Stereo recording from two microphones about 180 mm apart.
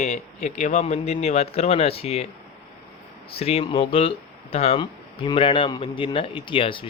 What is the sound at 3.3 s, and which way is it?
Speech, 35° left (ahead or behind).